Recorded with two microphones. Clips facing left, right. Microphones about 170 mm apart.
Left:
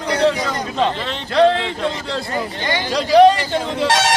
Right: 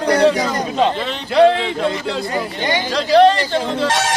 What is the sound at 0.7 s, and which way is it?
A man's voice, 5° right (ahead or behind).